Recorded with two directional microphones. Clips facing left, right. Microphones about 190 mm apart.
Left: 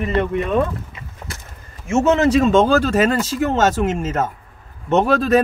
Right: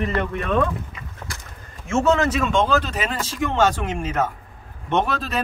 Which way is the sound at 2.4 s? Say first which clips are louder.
Left 6 dB; 45° left (ahead or behind).